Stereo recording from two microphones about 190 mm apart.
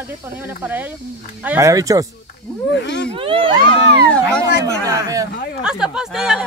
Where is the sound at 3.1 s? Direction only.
30° right (ahead or behind).